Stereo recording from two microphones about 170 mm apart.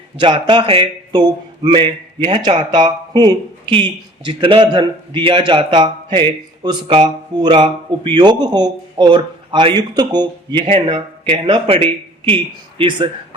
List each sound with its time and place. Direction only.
0.2 s speech: 30° right (ahead or behind)
12.8 s speech: 30° right (ahead or behind)